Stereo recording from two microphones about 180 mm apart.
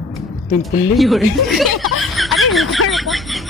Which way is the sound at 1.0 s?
Centre (ahead or behind).